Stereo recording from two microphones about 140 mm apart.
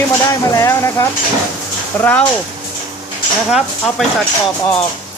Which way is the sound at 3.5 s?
5° right (ahead or behind).